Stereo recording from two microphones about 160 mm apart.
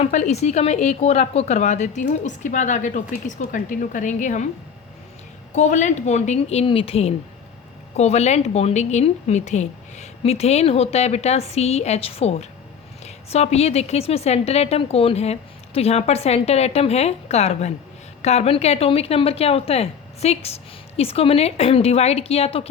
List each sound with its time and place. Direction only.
0.0 s a woman's voice: 45° left (ahead or behind)
5.5 s a woman's voice: 50° left (ahead or behind)